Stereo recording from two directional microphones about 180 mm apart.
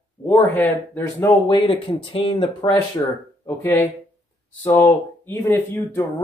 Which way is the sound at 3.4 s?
10° left (ahead or behind).